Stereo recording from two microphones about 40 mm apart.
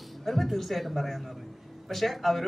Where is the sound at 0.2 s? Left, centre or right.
Centre.